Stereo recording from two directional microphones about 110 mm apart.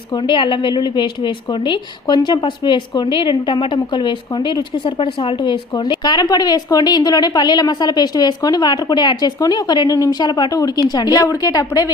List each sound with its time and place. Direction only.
0.3 s a woman's voice: 50° left (ahead or behind)